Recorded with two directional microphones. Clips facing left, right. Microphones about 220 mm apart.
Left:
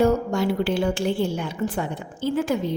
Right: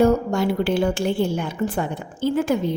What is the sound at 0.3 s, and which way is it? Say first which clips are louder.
A woman's voice: right 2 dB; 50° right (ahead or behind).